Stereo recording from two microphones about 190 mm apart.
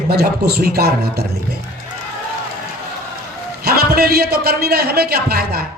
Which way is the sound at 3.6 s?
55° right (ahead or behind).